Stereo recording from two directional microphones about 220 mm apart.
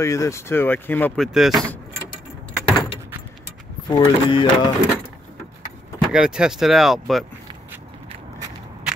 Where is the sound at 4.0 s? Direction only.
20° left (ahead or behind).